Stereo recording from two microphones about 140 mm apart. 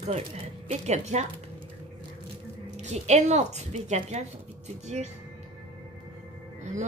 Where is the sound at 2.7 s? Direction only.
55° right (ahead or behind).